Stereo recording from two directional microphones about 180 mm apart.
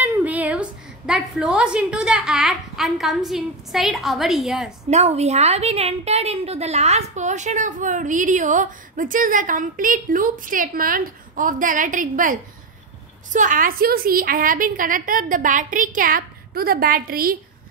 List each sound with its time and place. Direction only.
0.0 s a woman's voice: 10° right (ahead or behind)
4.8 s a woman's voice: 35° right (ahead or behind); by 17.4 s 55° right (ahead or behind)